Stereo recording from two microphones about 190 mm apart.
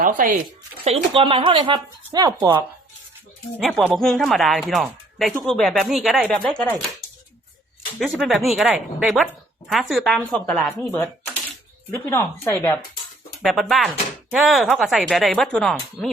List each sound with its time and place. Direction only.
0.0 s speech: 45° right (ahead or behind)
0.9 s speech: 30° right (ahead or behind)
3.6 s a woman's voice: centre (ahead or behind)
7.9 s a woman's voice: centre (ahead or behind)
13.4 s a woman's voice: centre (ahead or behind)